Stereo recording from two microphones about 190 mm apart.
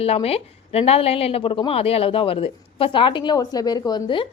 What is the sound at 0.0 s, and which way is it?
A woman's voice, 30° left (ahead or behind).